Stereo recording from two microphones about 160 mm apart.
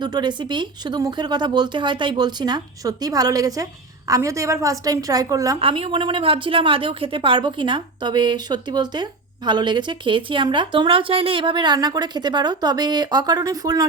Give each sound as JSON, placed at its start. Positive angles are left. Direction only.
{"t": 0.0, "sound": "speech", "side_deg": -25}
{"t": 5.5, "sound": "a woman's voice", "side_deg": -35}